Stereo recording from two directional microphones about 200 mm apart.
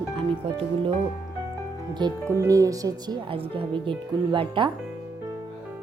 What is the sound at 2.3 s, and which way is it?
Speech, 15° right (ahead or behind).